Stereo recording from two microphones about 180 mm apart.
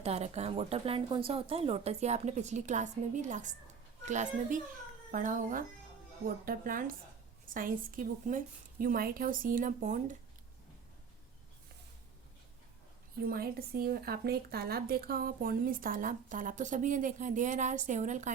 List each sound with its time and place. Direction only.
0.0 s speech: 35° right (ahead or behind)
13.2 s speech: 55° right (ahead or behind)